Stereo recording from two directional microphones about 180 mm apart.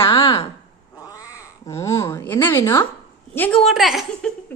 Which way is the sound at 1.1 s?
20° left (ahead or behind).